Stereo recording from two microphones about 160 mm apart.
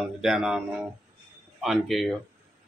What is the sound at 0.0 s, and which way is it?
Speech, centre (ahead or behind).